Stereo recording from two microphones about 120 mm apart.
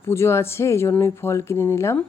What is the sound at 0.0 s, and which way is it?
Speech, 20° left (ahead or behind).